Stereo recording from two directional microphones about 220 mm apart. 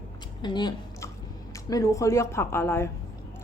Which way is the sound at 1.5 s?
15° left (ahead or behind).